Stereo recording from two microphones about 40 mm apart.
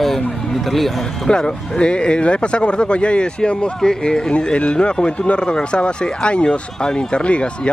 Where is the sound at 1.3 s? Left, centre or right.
Left.